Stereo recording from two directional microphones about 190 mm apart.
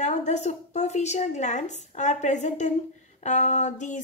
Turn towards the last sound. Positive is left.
turn(degrees=40)  # may be behind; listen again after turning